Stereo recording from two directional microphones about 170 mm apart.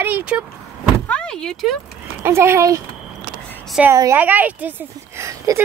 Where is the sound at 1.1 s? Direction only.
5° left (ahead or behind).